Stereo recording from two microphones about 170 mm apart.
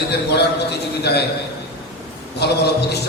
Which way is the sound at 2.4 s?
80° left.